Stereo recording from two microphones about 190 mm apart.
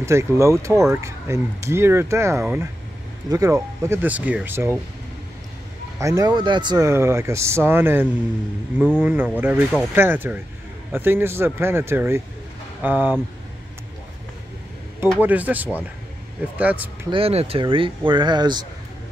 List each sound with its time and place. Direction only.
0.0 s speech: 15° right (ahead or behind)
5.9 s speech: 15° right (ahead or behind)
15.2 s speech: 10° right (ahead or behind)
17.1 s speech: 30° right (ahead or behind)